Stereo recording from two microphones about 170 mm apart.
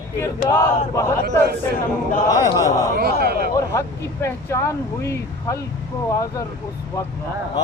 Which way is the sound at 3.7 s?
15° left (ahead or behind).